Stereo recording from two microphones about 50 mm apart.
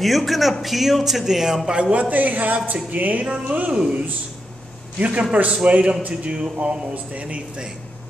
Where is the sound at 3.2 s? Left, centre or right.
Right.